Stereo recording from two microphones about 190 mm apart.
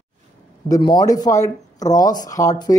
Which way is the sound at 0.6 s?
20° left (ahead or behind).